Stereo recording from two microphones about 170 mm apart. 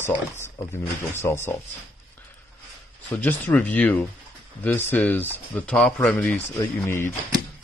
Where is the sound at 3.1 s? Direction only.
10° left (ahead or behind).